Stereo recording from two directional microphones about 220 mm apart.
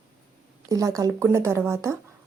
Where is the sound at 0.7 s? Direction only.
15° right (ahead or behind).